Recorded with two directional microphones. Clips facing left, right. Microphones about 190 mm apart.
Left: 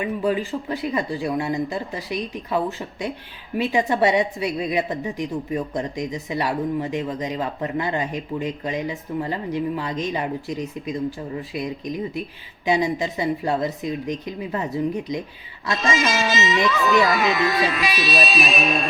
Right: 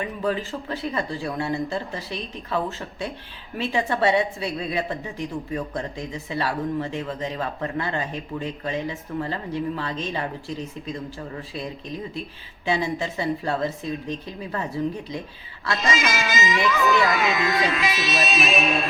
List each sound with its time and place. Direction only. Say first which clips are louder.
0.0 s a woman's voice: left 3 dB; 15° left (ahead or behind)
17.2 s music: left 2 dB; 15° right (ahead or behind)